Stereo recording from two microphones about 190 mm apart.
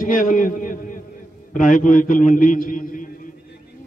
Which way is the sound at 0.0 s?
45° left (ahead or behind).